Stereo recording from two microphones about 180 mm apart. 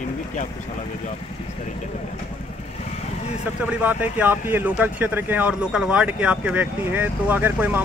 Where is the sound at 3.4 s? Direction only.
10° right (ahead or behind).